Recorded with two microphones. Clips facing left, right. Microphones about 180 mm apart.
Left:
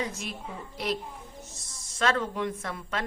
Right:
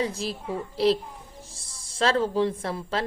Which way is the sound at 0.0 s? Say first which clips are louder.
Right 6 dB; 30° right (ahead or behind).